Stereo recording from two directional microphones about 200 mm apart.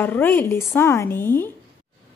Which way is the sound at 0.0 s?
10° left (ahead or behind).